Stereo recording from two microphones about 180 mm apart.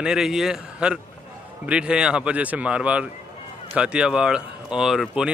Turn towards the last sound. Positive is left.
turn(degrees=-5)  # may be behind; listen again after turning